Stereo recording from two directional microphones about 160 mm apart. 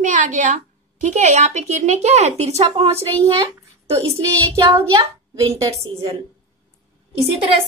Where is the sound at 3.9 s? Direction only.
20° right (ahead or behind).